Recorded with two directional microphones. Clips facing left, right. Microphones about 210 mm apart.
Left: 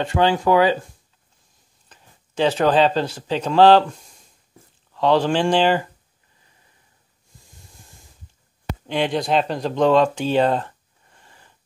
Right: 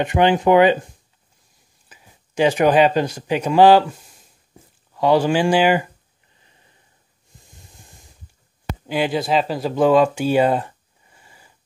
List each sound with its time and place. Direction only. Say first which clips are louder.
0.0 s speech: right 2 dB; 15° right (ahead or behind)
1.9 s speech: right 2 dB; 10° right (ahead or behind)
8.8 s speech: right 1 dB; 5° right (ahead or behind)